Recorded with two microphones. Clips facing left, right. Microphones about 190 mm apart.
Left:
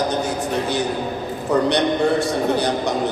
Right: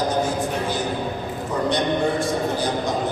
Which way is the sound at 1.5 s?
70° left (ahead or behind).